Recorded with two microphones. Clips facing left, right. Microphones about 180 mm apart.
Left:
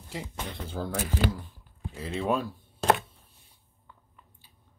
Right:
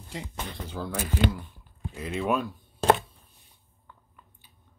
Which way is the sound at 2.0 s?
30° left (ahead or behind).